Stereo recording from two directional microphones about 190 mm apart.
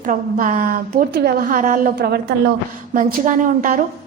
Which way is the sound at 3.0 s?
45° right (ahead or behind).